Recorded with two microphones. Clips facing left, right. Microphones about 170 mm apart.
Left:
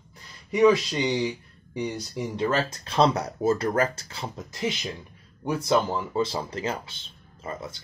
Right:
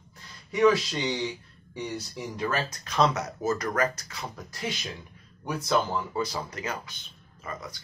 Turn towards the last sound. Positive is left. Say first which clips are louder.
# left 3 dB
turn(degrees=25)  # may be behind; listen again after turning